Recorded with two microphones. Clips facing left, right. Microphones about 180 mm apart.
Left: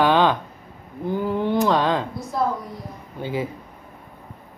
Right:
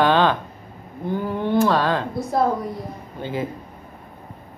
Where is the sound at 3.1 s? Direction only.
10° left (ahead or behind).